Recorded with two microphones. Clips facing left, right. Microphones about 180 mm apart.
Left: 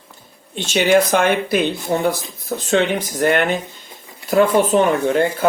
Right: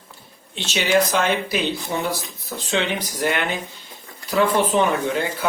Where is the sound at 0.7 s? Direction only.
55° left (ahead or behind).